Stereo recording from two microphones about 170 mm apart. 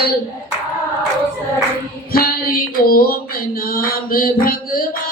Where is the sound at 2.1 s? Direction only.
60° left (ahead or behind).